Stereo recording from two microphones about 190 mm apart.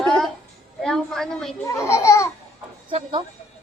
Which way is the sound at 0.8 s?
Centre (ahead or behind).